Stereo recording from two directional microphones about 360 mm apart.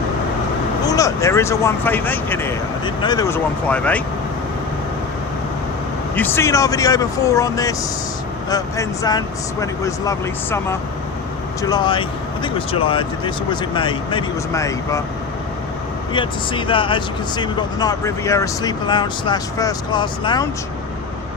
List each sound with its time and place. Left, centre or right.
0.9 s speech: centre
6.1 s speech: centre
16.1 s speech: centre